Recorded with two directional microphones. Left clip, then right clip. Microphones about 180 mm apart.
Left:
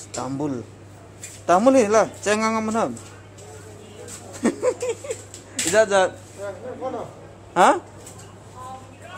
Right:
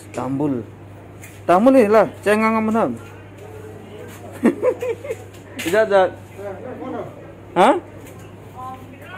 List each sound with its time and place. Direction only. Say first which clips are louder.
0.1 s a man's voice: right 5 dB; 10° left (ahead or behind)
4.4 s a man's voice: right 4 dB; 10° left (ahead or behind)
7.5 s a man's voice: right 2 dB; 10° left (ahead or behind)